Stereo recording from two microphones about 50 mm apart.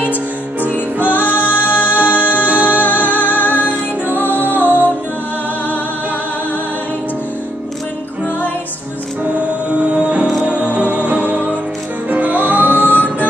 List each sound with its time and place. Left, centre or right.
0.0 s music: left
2.0 s music: right
2.8 s music: left
4.6 s music: right
9.2 s music: right